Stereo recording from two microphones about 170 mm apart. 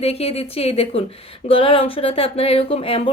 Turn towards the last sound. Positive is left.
turn(degrees=35)  # may be behind; listen again after turning